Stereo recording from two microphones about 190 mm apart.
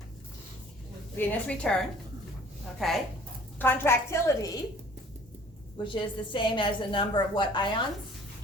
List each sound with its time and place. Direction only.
1.3 s a woman's voice: 5° left (ahead or behind)
3.6 s a woman's voice: 10° left (ahead or behind)
5.7 s a woman's voice: 25° left (ahead or behind)